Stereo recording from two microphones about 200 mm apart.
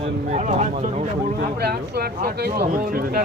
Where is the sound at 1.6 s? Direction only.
55° right (ahead or behind).